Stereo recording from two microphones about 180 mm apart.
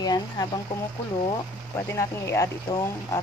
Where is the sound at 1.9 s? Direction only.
15° left (ahead or behind).